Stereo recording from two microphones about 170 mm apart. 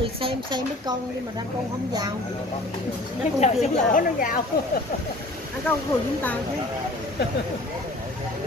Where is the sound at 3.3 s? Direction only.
40° left (ahead or behind).